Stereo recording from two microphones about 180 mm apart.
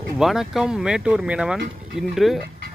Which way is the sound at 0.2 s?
Centre (ahead or behind).